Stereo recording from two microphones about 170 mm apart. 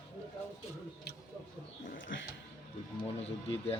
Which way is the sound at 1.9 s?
90° left.